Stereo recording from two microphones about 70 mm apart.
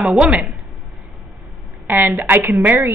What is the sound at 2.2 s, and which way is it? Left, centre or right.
Speech, right.